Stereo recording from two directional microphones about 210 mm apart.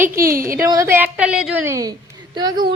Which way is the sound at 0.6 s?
15° right (ahead or behind).